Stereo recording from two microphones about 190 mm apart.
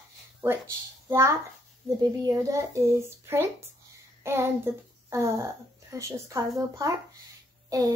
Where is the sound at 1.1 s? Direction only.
15° right (ahead or behind).